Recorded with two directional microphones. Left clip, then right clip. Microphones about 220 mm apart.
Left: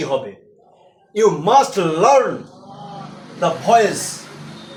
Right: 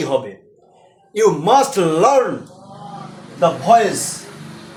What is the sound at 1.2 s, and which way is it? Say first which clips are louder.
A man's voice: even; 25° right (ahead or behind).